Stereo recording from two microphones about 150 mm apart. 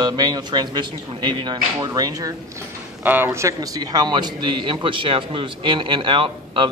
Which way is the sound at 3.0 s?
15° right (ahead or behind).